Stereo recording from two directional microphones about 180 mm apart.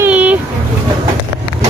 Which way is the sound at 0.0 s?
5° right (ahead or behind).